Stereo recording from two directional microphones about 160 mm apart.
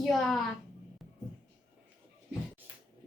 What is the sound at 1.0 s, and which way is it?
Music, centre (ahead or behind).